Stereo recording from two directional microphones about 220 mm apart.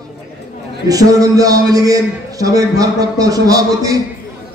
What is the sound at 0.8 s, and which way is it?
A man's voice, 15° right (ahead or behind).